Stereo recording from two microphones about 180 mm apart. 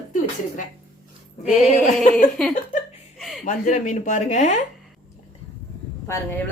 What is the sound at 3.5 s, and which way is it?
Speech, 45° left (ahead or behind).